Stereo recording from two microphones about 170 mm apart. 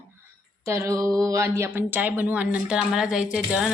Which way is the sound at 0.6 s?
15° right (ahead or behind).